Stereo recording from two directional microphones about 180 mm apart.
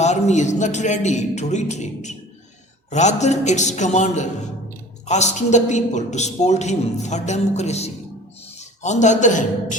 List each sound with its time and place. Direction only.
0.0 s a woman's voice: 40° left (ahead or behind)